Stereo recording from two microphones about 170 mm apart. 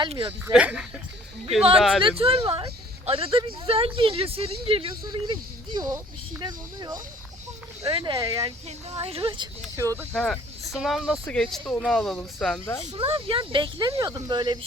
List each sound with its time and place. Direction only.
0.0 s speech: 25° right (ahead or behind)
0.5 s speech: 5° right (ahead or behind)
2.0 s speech: 30° right (ahead or behind)
8.9 s speech: 35° right (ahead or behind)
9.7 s speech: 20° right (ahead or behind)
10.1 s speech: centre (ahead or behind)
12.9 s speech: 35° right (ahead or behind)